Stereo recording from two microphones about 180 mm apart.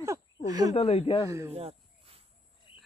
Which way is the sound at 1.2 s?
15° right (ahead or behind).